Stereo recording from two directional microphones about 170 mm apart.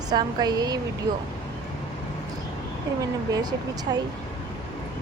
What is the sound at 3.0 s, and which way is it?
A woman's voice, 20° right (ahead or behind).